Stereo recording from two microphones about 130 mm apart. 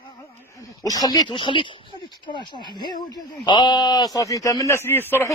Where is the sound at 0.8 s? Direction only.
30° left (ahead or behind).